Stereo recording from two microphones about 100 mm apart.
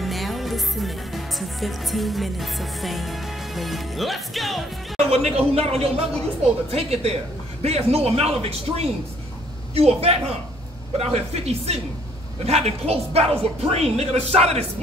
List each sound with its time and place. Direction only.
0.0 s music: centre (ahead or behind)
4.9 s a woman's voice: 90° right